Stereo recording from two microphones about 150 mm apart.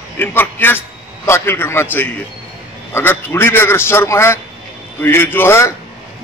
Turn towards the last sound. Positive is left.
turn(degrees=15)  # may be behind; listen again after turning